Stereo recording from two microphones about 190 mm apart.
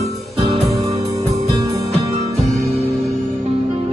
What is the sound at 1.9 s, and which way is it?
Music, 35° right (ahead or behind).